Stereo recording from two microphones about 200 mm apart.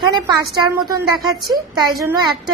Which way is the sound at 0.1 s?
20° right (ahead or behind).